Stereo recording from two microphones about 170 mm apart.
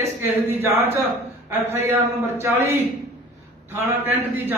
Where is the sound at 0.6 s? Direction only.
10° right (ahead or behind).